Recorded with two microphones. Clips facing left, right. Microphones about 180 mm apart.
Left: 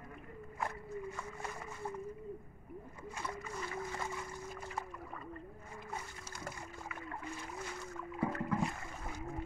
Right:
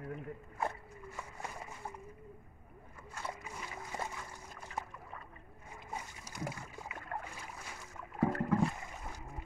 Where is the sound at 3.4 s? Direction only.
15° right (ahead or behind).